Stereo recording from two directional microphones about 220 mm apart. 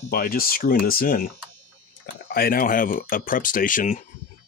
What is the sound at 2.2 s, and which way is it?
Speech, 45° left (ahead or behind).